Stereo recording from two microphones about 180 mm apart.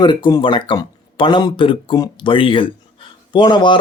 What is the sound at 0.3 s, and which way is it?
Speech, 25° left (ahead or behind).